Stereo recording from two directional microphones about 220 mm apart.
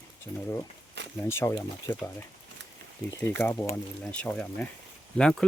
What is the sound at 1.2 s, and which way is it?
Speech, 10° left (ahead or behind).